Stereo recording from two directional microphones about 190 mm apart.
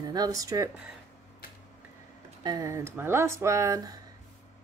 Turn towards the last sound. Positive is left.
turn(degrees=-20)  # may be behind; listen again after turning